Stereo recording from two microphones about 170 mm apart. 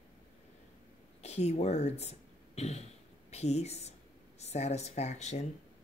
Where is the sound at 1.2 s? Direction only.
40° left (ahead or behind).